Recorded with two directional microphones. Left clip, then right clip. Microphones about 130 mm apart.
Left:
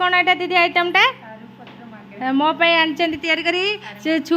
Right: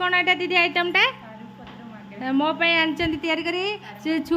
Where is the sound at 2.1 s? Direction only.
5° left (ahead or behind).